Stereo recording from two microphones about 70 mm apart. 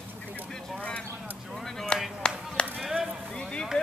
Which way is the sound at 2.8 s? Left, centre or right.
Centre.